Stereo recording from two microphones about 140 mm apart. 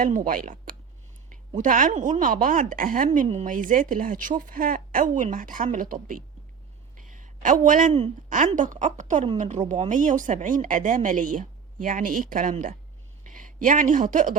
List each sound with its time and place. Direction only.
0.0 s speech: 75° right (ahead or behind)
6.9 s a sound: 65° right (ahead or behind)
8.3 s a woman's voice: 65° right (ahead or behind)